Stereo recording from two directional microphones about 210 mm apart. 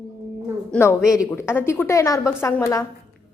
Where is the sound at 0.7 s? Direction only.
10° left (ahead or behind).